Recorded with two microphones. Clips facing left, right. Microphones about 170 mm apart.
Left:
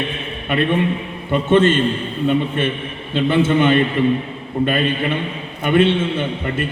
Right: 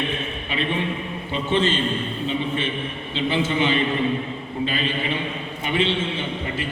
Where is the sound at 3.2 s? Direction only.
55° left (ahead or behind).